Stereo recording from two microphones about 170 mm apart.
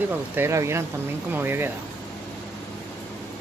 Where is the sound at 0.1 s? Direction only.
15° right (ahead or behind).